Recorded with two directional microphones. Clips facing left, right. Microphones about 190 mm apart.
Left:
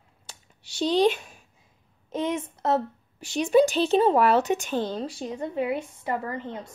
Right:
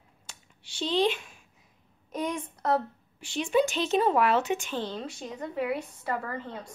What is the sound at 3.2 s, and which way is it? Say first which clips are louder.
Speech: left 6 dB; 40° left (ahead or behind).